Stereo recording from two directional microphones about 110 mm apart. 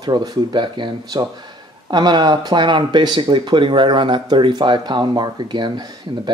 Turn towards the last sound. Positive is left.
turn(degrees=-45)  # may be behind; listen again after turning